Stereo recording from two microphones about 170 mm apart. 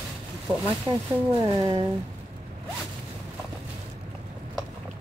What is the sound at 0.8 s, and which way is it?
Speech, 20° right (ahead or behind).